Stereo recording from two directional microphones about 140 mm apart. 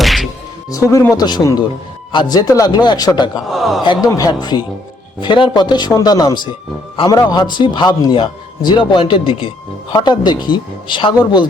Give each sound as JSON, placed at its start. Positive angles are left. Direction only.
{"t": 0.0, "sound": "music", "side_deg": 0}
{"t": 0.7, "sound": "a man's voice", "side_deg": 20}
{"t": 3.5, "sound": "a man's voice", "side_deg": 0}
{"t": 3.8, "sound": "a man's voice", "side_deg": 25}